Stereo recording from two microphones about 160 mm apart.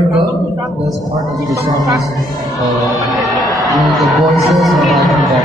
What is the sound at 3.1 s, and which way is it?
A man's voice, centre (ahead or behind).